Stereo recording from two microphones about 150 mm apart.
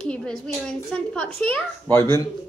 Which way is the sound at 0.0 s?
5° left (ahead or behind).